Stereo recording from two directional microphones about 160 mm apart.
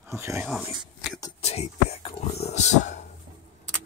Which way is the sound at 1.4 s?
40° left (ahead or behind).